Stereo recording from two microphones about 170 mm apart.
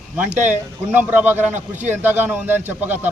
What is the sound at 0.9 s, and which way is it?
A man's voice, 10° right (ahead or behind).